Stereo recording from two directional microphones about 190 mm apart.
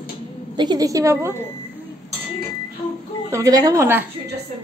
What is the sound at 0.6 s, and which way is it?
Speech, 20° right (ahead or behind).